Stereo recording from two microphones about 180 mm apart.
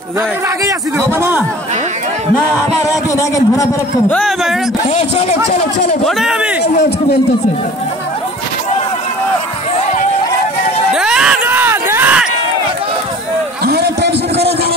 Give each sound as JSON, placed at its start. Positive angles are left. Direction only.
{"t": 0.7, "sound": "a man's voice", "side_deg": -15}
{"t": 2.9, "sound": "a man's voice", "side_deg": 20}
{"t": 4.1, "sound": "speech", "side_deg": 5}
{"t": 4.9, "sound": "a man's voice", "side_deg": 40}
{"t": 6.0, "sound": "speech", "side_deg": -5}
{"t": 10.9, "sound": "music", "side_deg": -5}
{"t": 13.7, "sound": "a sound", "side_deg": -65}